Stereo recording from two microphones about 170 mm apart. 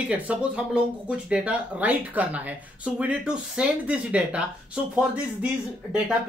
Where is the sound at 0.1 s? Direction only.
10° right (ahead or behind).